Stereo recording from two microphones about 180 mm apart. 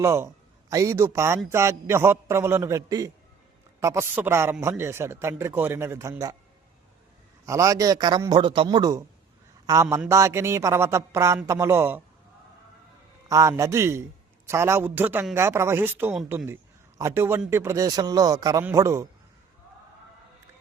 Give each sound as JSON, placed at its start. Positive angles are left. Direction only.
{"t": 0.0, "sound": "a man's voice", "side_deg": -15}
{"t": 7.4, "sound": "a man's voice", "side_deg": -15}
{"t": 13.2, "sound": "a man's voice", "side_deg": -15}